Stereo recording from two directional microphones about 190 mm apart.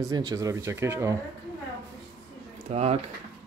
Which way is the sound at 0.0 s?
20° right (ahead or behind).